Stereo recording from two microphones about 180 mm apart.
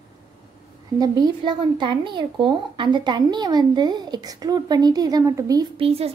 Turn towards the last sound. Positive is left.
turn(degrees=-20)  # may be behind; listen again after turning